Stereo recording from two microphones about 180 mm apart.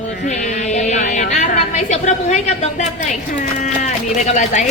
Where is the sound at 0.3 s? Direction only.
40° left (ahead or behind).